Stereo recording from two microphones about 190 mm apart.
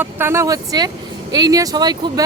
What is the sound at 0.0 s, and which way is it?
Speech, 15° right (ahead or behind).